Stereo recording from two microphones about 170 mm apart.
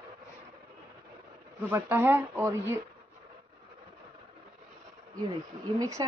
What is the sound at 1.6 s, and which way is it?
Speech, 10° right (ahead or behind).